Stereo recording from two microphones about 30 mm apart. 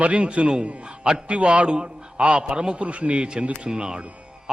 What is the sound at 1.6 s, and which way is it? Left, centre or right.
A man's voice, right.